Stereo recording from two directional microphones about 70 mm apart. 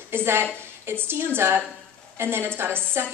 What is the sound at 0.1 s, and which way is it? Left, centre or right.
A woman's voice, right.